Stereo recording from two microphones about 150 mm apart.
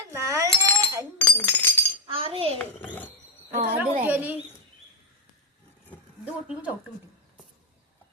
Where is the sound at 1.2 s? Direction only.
10° left (ahead or behind).